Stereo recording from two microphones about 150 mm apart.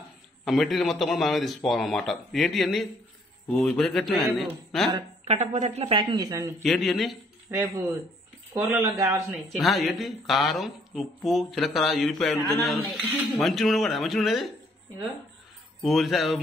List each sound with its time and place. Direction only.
0.5 s speech: centre (ahead or behind)
5.2 s speech: 50° right (ahead or behind); by 6.5 s 25° right (ahead or behind)
6.6 s speech: centre (ahead or behind)
7.5 s a man's voice: 20° right (ahead or behind)
8.5 s speech: 10° right (ahead or behind)
8.8 s a man's voice: 20° right (ahead or behind)
9.5 s speech: centre (ahead or behind)
15.8 s speech: centre (ahead or behind)